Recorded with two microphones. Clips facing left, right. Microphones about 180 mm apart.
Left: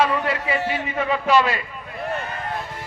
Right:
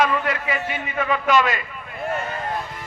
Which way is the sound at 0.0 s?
30° left (ahead or behind).